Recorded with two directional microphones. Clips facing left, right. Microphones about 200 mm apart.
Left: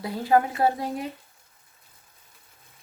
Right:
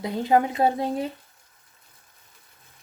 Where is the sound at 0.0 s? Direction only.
20° right (ahead or behind).